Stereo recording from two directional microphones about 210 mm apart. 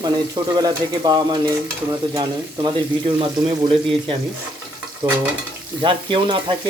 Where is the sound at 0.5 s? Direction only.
20° right (ahead or behind).